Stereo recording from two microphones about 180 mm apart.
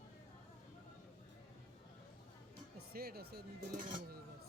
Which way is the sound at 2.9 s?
60° right (ahead or behind).